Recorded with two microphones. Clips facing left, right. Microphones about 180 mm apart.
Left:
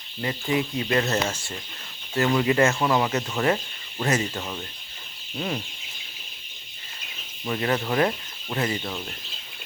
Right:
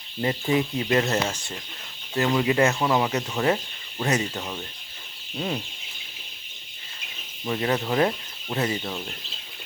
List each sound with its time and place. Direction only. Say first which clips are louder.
0.2 s speech: right 2 dB; 25° right (ahead or behind)
7.4 s speech: even; 15° right (ahead or behind)